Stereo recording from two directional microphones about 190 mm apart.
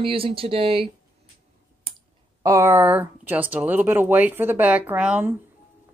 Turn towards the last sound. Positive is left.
turn(degrees=-5)  # may be behind; listen again after turning